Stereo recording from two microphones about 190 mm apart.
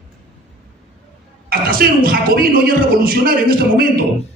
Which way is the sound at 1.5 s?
50° right (ahead or behind).